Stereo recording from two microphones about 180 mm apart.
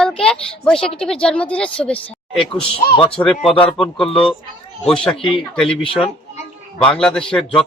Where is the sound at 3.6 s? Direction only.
5° left (ahead or behind).